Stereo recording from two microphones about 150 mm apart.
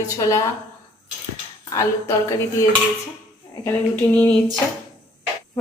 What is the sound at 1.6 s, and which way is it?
Dishes, 20° left (ahead or behind).